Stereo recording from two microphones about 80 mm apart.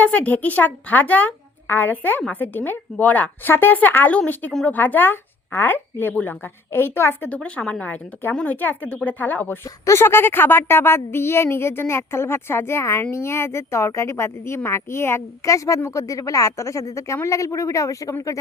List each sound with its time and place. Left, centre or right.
0.0 s a woman's voice: left
7.3 s a woman's voice: centre; by 18.3 s left